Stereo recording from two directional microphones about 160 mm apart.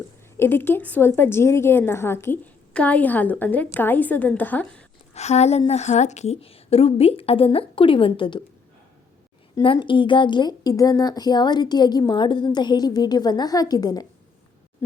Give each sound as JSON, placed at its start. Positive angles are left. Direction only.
{"t": 0.3, "sound": "a woman's voice", "side_deg": 15}
{"t": 5.1, "sound": "a woman's voice", "side_deg": 45}
{"t": 9.6, "sound": "a woman's voice", "side_deg": 30}